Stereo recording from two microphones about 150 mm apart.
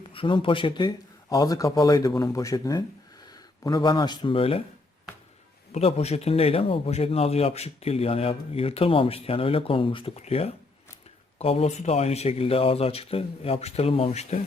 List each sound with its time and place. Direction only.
0.1 s speech: 35° left (ahead or behind)
5.7 s speech: 45° left (ahead or behind)